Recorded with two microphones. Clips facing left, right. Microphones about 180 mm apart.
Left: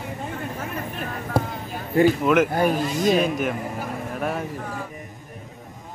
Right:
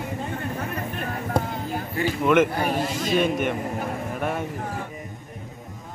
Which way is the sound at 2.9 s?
Centre (ahead or behind).